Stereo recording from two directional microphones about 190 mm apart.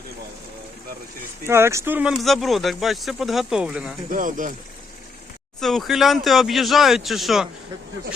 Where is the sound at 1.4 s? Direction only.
15° right (ahead or behind).